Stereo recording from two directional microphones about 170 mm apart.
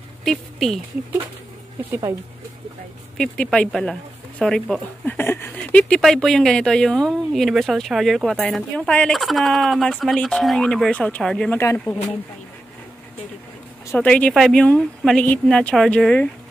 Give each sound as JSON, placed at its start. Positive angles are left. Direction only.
{"t": 0.2, "sound": "speech", "side_deg": 0}
{"t": 1.9, "sound": "speech", "side_deg": -20}
{"t": 3.2, "sound": "speech", "side_deg": 5}
{"t": 13.9, "sound": "speech", "side_deg": 5}